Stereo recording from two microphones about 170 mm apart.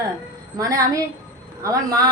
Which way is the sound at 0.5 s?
20° right (ahead or behind).